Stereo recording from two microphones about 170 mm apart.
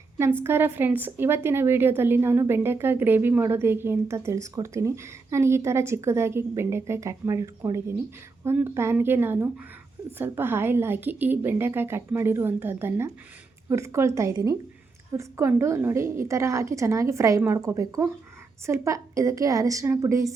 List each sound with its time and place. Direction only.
0.2 s a woman's voice: 15° right (ahead or behind)